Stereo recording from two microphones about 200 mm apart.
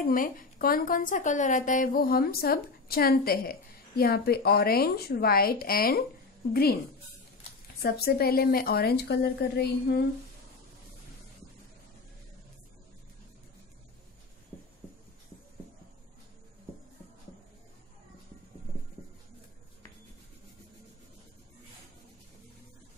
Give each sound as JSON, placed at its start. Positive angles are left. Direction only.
{"t": 0.0, "sound": "a woman's voice", "side_deg": 45}
{"t": 7.8, "sound": "a woman's voice", "side_deg": 50}